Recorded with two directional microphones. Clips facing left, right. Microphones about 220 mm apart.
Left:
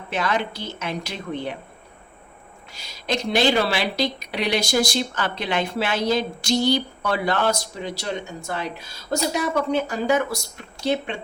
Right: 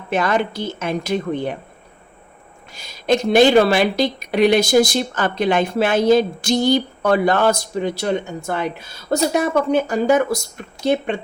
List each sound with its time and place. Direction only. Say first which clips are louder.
0.1 s a woman's voice: right 6 dB; 50° right (ahead or behind)
2.7 s a woman's voice: right 8 dB; 50° right (ahead or behind)